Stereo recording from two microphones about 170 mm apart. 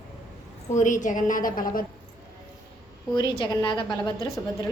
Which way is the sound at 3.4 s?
25° left (ahead or behind).